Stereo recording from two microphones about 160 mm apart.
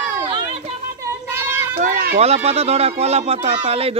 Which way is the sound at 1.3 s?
15° right (ahead or behind).